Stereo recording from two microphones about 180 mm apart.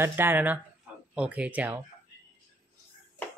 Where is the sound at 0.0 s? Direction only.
10° right (ahead or behind).